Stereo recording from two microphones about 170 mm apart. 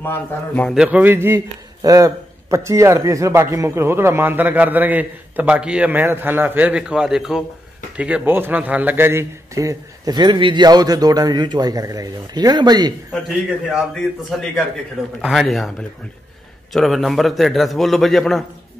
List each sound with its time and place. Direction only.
0.0 s a man's voice: 15° left (ahead or behind)
0.7 s a man's voice: 5° right (ahead or behind); by 12.9 s 25° right (ahead or behind)
13.7 s a man's voice: centre (ahead or behind)
15.2 s a man's voice: centre (ahead or behind)
16.7 s a man's voice: centre (ahead or behind)